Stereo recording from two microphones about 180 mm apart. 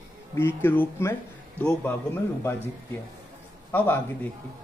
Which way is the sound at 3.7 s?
10° left (ahead or behind).